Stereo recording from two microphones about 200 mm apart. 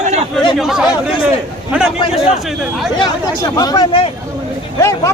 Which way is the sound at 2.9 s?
20° left (ahead or behind).